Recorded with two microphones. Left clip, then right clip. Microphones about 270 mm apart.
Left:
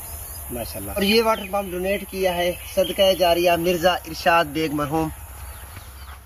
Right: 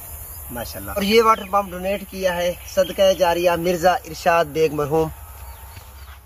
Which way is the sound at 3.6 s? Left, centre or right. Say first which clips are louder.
Right 2 dB; right.